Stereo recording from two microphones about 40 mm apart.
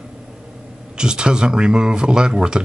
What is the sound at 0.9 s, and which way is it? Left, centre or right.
Speech, centre.